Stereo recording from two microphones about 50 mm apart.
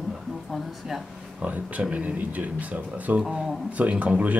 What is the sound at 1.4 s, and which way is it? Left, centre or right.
Speech, right.